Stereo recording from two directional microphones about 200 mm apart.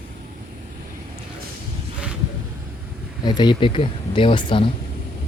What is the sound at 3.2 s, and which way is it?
Speech, 20° left (ahead or behind).